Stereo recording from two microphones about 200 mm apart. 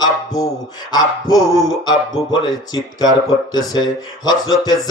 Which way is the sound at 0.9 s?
20° left (ahead or behind).